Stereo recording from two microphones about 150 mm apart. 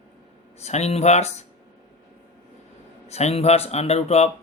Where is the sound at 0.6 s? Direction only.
45° left (ahead or behind).